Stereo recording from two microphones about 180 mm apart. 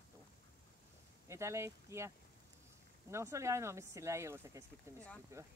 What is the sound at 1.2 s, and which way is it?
Speech, 15° right (ahead or behind).